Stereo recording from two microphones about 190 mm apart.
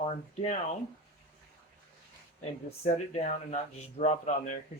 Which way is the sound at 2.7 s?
35° left (ahead or behind).